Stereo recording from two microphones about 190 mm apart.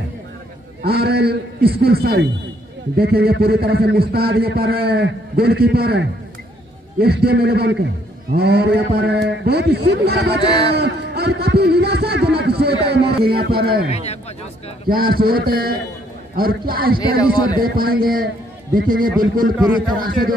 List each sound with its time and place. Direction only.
0.8 s a man's voice: 55° right (ahead or behind)
13.8 s speech: 35° left (ahead or behind)
14.9 s a man's voice: 50° right (ahead or behind)